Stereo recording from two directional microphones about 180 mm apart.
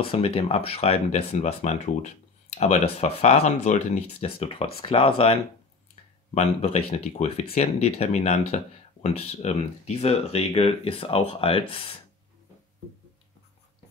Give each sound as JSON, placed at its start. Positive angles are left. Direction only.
{"t": 0.0, "sound": "speech", "side_deg": 30}